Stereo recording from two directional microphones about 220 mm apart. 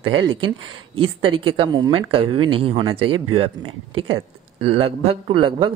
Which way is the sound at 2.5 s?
25° right (ahead or behind).